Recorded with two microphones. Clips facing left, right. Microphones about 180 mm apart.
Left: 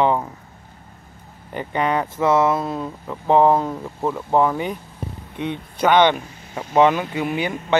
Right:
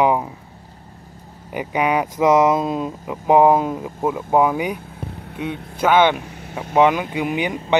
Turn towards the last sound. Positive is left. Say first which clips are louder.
# right 1 dB
turn(degrees=-15)  # may be behind; listen again after turning